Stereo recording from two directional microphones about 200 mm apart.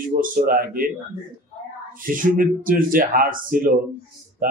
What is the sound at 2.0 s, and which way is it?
Speech, 45° right (ahead or behind).